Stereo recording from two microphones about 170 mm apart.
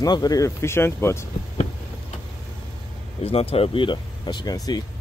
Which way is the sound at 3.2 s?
35° left (ahead or behind).